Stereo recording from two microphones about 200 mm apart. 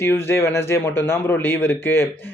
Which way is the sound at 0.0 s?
10° left (ahead or behind).